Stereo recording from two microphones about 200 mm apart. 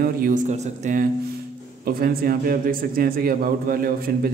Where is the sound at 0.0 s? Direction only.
40° right (ahead or behind).